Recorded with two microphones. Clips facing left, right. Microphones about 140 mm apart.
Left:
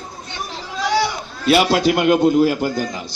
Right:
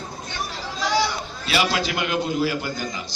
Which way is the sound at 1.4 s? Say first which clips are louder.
Left 9 dB; 55° left (ahead or behind).